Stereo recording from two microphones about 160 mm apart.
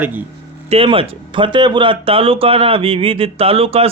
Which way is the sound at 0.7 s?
35° right (ahead or behind).